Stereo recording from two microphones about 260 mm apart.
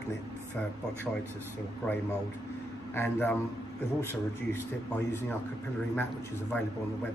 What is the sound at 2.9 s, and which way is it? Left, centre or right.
Speech, centre.